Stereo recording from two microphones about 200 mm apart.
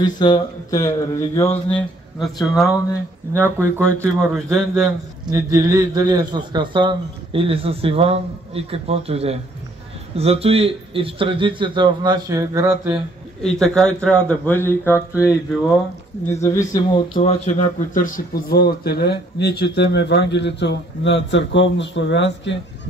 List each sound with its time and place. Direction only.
0.0 s speech: 20° left (ahead or behind)
1.7 s a man's voice: 5° left (ahead or behind)
3.3 s speech: 10° right (ahead or behind)
4.3 s a man's voice: centre (ahead or behind)
5.3 s a man's voice: 15° right (ahead or behind)
13.4 s a man's voice: centre (ahead or behind)
16.3 s speech: 15° left (ahead or behind)
17.2 s a man's voice: 35° left (ahead or behind); by 22.6 s 65° left (ahead or behind)